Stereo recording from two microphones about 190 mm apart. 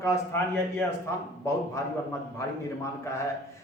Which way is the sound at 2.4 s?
15° left (ahead or behind).